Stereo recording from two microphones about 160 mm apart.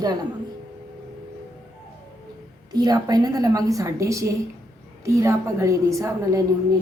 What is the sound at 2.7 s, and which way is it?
A woman's voice, 25° right (ahead or behind).